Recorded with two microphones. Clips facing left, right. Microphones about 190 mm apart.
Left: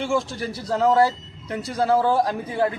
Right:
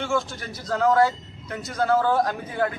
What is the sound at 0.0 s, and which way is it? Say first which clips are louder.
A man's voice: left 3 dB; 30° left (ahead or behind).